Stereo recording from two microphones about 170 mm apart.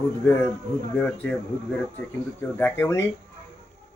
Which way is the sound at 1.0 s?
5° left (ahead or behind).